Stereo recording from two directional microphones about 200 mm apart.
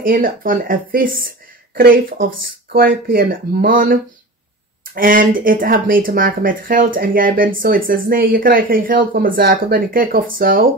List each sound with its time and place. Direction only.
0.0 s speech: 45° right (ahead or behind)